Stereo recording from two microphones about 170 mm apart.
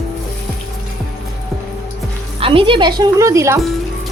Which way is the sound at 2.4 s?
30° right (ahead or behind).